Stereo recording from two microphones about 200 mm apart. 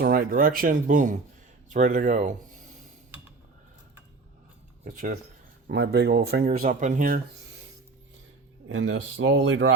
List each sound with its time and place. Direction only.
0.0 s speech: 45° right (ahead or behind)
4.9 s speech: 40° right (ahead or behind)
5.6 s speech: 55° right (ahead or behind)
6.6 s speech: 40° right (ahead or behind)
8.6 s speech: 75° right (ahead or behind)